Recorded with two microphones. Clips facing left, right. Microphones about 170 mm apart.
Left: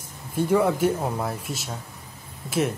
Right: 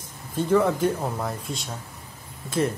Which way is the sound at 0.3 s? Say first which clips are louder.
Even; 10° left (ahead or behind).